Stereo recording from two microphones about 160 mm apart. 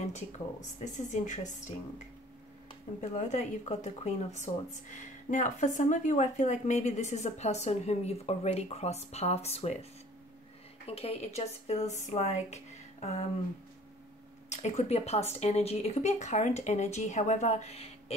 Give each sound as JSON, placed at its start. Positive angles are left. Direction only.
{"t": 0.9, "sound": "speech", "side_deg": 50}
{"t": 3.0, "sound": "speech", "side_deg": 45}
{"t": 10.9, "sound": "speech", "side_deg": 40}
{"t": 14.5, "sound": "speech", "side_deg": 45}